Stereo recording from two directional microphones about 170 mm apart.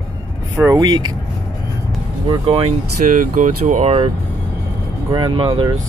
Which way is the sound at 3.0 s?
50° right (ahead or behind).